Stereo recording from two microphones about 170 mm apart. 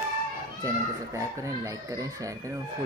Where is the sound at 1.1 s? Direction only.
20° right (ahead or behind).